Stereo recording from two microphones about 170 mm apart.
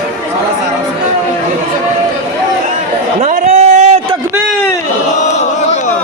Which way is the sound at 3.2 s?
45° right (ahead or behind).